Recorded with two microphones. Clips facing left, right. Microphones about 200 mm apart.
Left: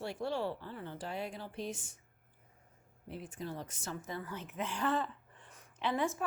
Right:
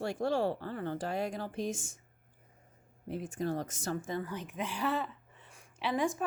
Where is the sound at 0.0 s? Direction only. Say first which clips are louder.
Right 5 dB; 45° right (ahead or behind).